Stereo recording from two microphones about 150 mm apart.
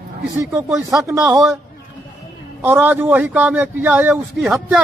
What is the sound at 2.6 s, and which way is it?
A man's voice, 15° right (ahead or behind).